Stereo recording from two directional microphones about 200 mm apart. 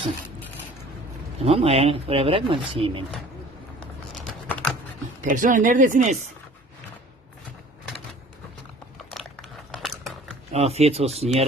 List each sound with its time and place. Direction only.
1.4 s speech: 30° right (ahead or behind)
4.1 s typing: centre (ahead or behind)
5.2 s speech: 40° right (ahead or behind)
9.7 s a sound: centre (ahead or behind)
10.5 s speech: 30° right (ahead or behind)